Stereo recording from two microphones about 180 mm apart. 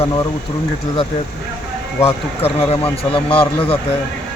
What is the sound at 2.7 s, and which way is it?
Speech, 30° left (ahead or behind).